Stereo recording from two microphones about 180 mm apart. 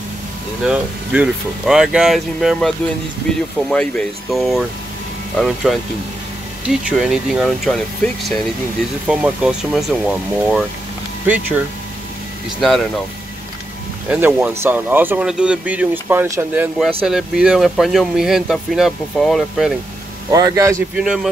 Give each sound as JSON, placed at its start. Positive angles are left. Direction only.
{"t": 0.7, "sound": "speech", "side_deg": -5}
{"t": 3.7, "sound": "speech", "side_deg": 5}
{"t": 14.0, "sound": "speech", "side_deg": -10}
{"t": 20.2, "sound": "speech", "side_deg": -20}
{"t": 21.0, "sound": "speech", "side_deg": -5}